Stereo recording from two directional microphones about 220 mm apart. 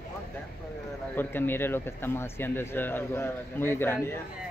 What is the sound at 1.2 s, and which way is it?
Speech, 10° left (ahead or behind).